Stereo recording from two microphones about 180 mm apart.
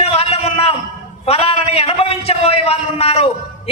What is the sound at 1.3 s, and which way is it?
A man's voice, 35° left (ahead or behind).